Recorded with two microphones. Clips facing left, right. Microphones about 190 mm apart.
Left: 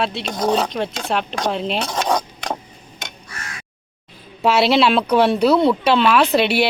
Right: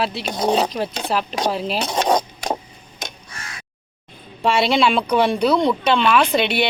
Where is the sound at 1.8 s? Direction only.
20° right (ahead or behind).